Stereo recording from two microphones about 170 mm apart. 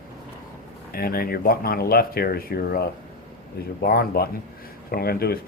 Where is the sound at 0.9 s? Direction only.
60° left (ahead or behind).